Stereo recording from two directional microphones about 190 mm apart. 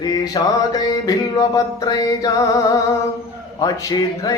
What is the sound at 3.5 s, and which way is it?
Speech, 20° left (ahead or behind).